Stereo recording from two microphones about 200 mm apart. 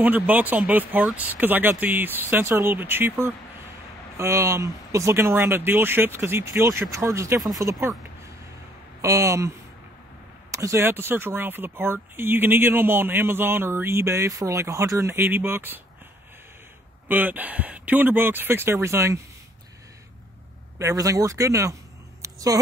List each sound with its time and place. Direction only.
0.0 s speech: 10° right (ahead or behind)
9.0 s speech: 15° right (ahead or behind)
10.5 s speech: 15° right (ahead or behind)
17.1 s speech: 10° right (ahead or behind)
20.8 s speech: 15° right (ahead or behind)
22.2 s a sound: 15° right (ahead or behind)